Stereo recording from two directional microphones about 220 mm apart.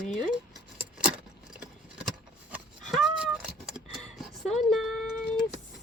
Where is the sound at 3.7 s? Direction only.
Centre (ahead or behind).